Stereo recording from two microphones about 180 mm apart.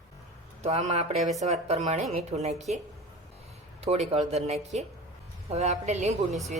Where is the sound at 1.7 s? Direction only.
35° right (ahead or behind).